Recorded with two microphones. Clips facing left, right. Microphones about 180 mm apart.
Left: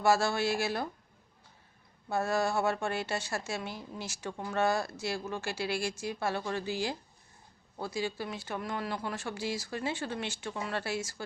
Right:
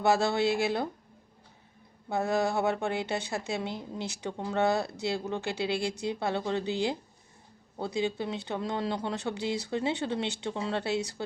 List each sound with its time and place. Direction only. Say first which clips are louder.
0.0 s speech: right 2 dB; 20° right (ahead or behind)
2.0 s speech: right 2 dB; 20° right (ahead or behind)